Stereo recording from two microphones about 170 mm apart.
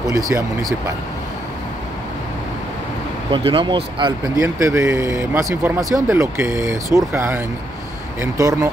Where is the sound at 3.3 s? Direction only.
30° right (ahead or behind).